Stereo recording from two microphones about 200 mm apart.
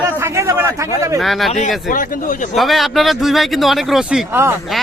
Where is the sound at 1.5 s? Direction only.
35° left (ahead or behind).